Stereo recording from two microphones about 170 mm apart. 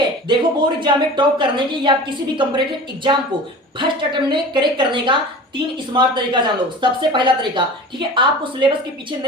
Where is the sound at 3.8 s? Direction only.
30° right (ahead or behind).